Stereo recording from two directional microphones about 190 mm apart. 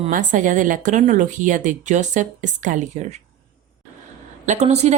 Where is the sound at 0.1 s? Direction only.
40° right (ahead or behind).